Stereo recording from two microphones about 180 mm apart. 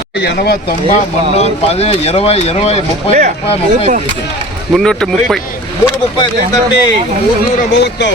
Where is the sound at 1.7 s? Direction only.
35° left (ahead or behind).